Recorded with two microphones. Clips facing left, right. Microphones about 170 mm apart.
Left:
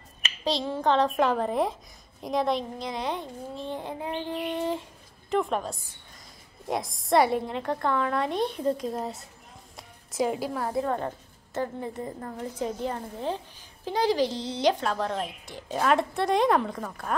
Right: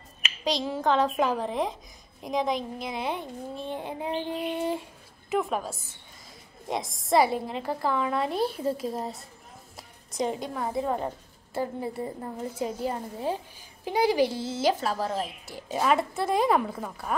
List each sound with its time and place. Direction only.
0.2 s a woman's voice: centre (ahead or behind)